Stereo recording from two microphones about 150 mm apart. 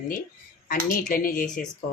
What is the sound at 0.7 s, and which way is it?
Speech, 70° left (ahead or behind).